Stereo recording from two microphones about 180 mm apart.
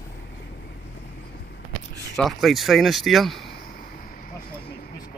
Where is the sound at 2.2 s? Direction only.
Centre (ahead or behind).